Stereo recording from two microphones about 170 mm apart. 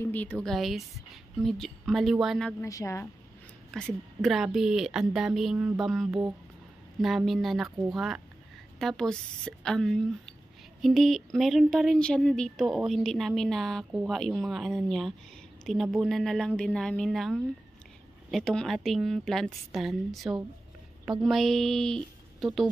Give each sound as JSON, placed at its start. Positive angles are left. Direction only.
{"t": 0.0, "sound": "speech", "side_deg": 10}
{"t": 2.6, "sound": "speech", "side_deg": 15}
{"t": 3.7, "sound": "speech", "side_deg": 0}